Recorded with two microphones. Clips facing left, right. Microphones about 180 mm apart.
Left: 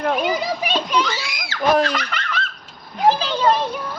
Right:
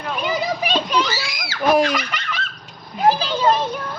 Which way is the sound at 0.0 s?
50° left (ahead or behind).